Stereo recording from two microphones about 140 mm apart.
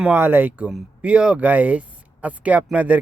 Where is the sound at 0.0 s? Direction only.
10° right (ahead or behind).